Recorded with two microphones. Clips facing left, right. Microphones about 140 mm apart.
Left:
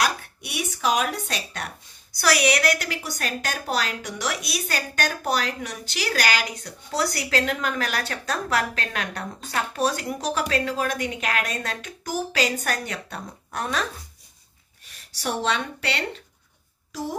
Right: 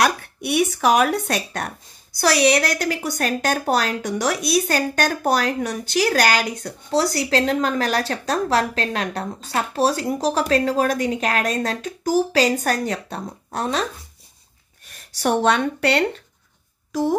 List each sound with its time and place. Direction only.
0.0 s speech: 60° right (ahead or behind)
2.1 s a woman's voice: 30° right (ahead or behind)
6.9 s a woman's voice: 30° right (ahead or behind)
14.9 s speech: 55° right (ahead or behind)